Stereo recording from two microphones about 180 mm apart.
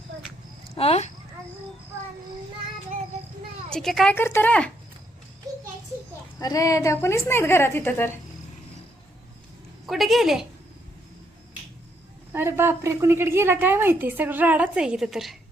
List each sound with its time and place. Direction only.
0.8 s speech: 35° left (ahead or behind)
3.7 s a woman's voice: centre (ahead or behind)
4.1 s a woman's voice: 10° left (ahead or behind)
6.4 s a woman's voice: 20° left (ahead or behind)
9.8 s a woman's voice: centre (ahead or behind)
12.3 s a woman's voice: 15° right (ahead or behind)